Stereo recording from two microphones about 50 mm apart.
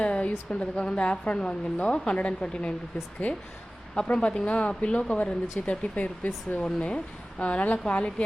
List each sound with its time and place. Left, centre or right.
0.0 s speech: left
3.9 s speech: centre
6.6 s speech: centre